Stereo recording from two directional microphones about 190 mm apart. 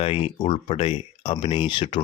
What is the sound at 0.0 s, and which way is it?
Speech, 30° left (ahead or behind).